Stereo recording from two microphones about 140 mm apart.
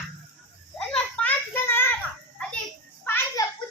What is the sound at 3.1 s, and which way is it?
Children playing, 15° left (ahead or behind).